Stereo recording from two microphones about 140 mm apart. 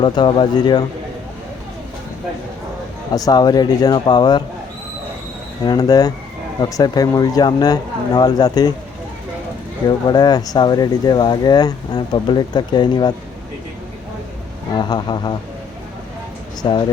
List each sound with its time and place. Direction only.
0.0 s speech: 35° left (ahead or behind)
3.1 s speech: 30° left (ahead or behind)
5.6 s speech: 25° left (ahead or behind)
10.1 s speech: 30° left (ahead or behind)
14.7 s speech: 35° left (ahead or behind)
16.6 s speech: 35° left (ahead or behind)